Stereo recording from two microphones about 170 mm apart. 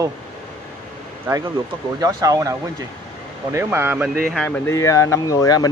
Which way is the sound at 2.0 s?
20° right (ahead or behind).